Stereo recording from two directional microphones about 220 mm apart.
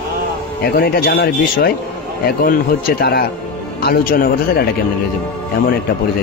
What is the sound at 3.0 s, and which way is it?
Speech, 45° left (ahead or behind).